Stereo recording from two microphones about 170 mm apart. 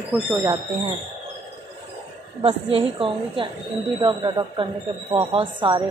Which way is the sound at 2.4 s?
35° right (ahead or behind).